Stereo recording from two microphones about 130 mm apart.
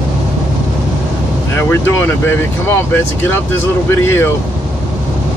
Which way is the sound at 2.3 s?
15° left (ahead or behind).